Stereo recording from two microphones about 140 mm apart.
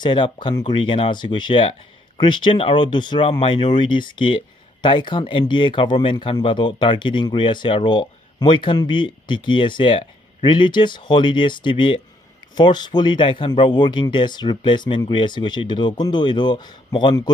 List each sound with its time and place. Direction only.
0.0 s speech: 35° left (ahead or behind)